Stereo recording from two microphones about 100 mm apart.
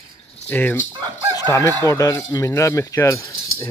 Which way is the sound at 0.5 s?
20° left (ahead or behind).